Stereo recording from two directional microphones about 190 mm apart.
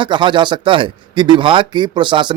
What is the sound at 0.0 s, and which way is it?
A man's voice, 25° right (ahead or behind).